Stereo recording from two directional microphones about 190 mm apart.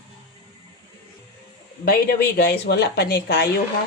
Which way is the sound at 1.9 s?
55° left (ahead or behind).